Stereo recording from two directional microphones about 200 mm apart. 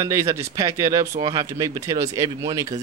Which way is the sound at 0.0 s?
15° right (ahead or behind).